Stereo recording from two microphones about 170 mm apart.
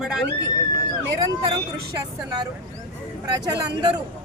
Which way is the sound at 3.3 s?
25° right (ahead or behind).